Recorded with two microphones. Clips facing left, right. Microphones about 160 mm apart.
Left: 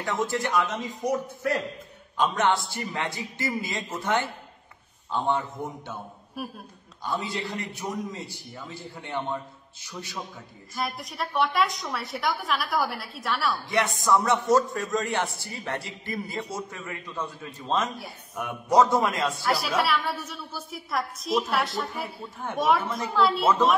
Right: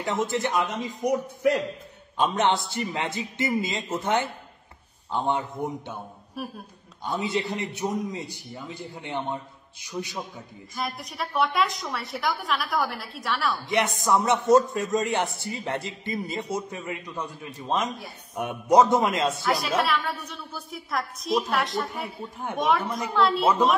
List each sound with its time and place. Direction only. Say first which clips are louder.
0.0 s a man's voice: right 1 dB; 20° right (ahead or behind)
7.1 s a man's voice: right 3 dB; 20° right (ahead or behind)
10.7 s a woman's voice: left 1 dB; centre (ahead or behind)
13.7 s a man's voice: even; 20° right (ahead or behind)
19.5 s a woman's voice: left 2 dB; centre (ahead or behind)